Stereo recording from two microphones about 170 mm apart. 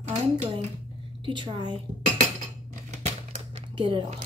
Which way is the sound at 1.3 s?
30° right (ahead or behind).